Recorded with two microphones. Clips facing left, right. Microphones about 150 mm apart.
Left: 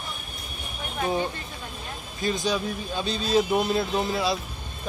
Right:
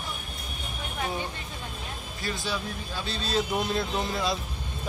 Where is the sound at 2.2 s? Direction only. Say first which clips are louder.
Left 7 dB; 20° left (ahead or behind).